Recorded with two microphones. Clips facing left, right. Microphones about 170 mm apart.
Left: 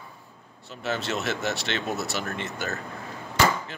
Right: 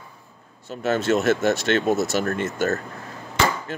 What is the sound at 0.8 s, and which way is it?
Speech, 50° right (ahead or behind).